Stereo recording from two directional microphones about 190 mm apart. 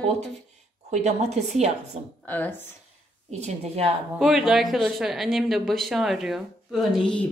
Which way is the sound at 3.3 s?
35° right (ahead or behind).